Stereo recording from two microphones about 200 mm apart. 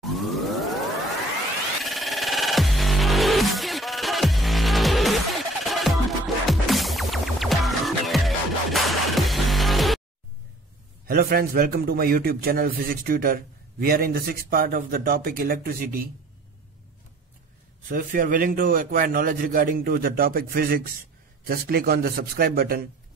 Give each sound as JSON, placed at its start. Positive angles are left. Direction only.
{"t": 0.0, "sound": "music", "side_deg": 0}
{"t": 1.9, "sound": "music", "side_deg": 0}
{"t": 11.1, "sound": "a man's voice", "side_deg": -50}
{"t": 17.8, "sound": "a man's voice", "side_deg": -45}